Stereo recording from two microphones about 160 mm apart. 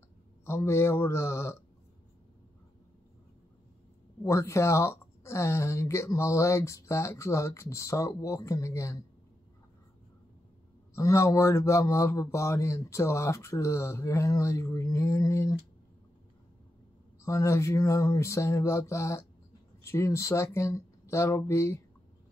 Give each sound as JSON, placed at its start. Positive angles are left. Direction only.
{"t": 0.5, "sound": "speech", "side_deg": 15}
{"t": 4.2, "sound": "speech", "side_deg": 20}
{"t": 11.0, "sound": "speech", "side_deg": 20}
{"t": 17.2, "sound": "a sound", "side_deg": 20}
{"t": 19.8, "sound": "speech", "side_deg": 15}